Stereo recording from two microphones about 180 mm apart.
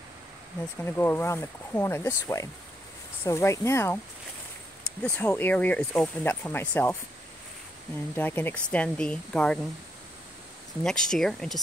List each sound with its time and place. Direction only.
0.8 s speech: 10° left (ahead or behind)
5.0 s speech: 10° left (ahead or behind)
8.2 s speech: 10° left (ahead or behind)
10.8 s speech: 5° left (ahead or behind)